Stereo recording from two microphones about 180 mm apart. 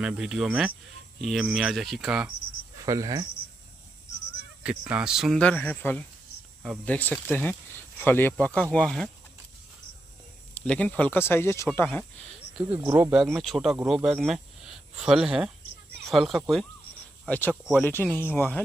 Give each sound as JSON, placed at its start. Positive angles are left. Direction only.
{"t": 0.0, "sound": "speech", "side_deg": -5}
{"t": 2.8, "sound": "speech", "side_deg": -20}
{"t": 4.6, "sound": "speech", "side_deg": -5}
{"t": 10.5, "sound": "speech", "side_deg": 5}
{"t": 12.7, "sound": "speech", "side_deg": -15}
{"t": 13.1, "sound": "speech", "side_deg": 0}